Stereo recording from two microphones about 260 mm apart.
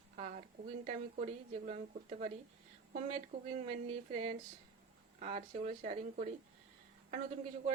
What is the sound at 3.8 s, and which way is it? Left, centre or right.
Speech, right.